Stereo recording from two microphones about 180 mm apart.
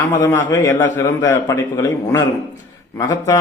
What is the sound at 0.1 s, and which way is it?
A man's voice, 10° left (ahead or behind).